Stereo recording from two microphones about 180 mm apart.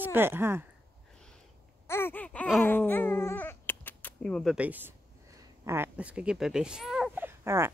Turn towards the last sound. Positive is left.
turn(degrees=-15)  # may be behind; listen again after turning